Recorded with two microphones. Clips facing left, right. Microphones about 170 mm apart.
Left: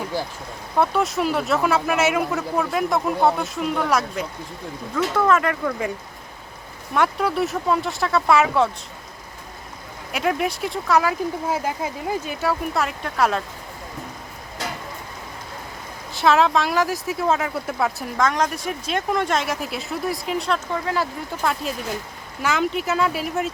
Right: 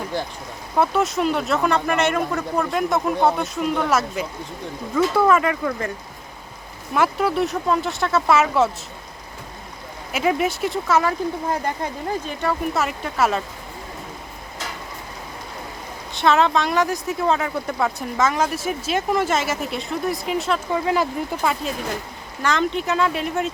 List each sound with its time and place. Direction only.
0.8 s speech: centre (ahead or behind)
6.9 s speech: centre (ahead or behind)
10.1 s speech: centre (ahead or behind)
16.1 s speech: centre (ahead or behind)
20.7 s speech: 15° right (ahead or behind)
21.4 s speech: 5° right (ahead or behind)
22.4 s speech: 5° left (ahead or behind)